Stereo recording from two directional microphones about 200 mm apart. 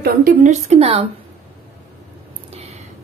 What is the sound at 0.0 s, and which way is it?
A woman's voice, 45° right (ahead or behind).